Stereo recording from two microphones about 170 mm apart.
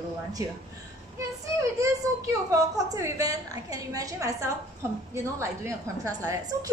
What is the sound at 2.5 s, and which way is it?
A woman's voice, 20° right (ahead or behind).